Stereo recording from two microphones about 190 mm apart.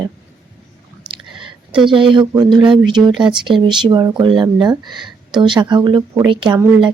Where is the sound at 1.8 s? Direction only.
25° right (ahead or behind).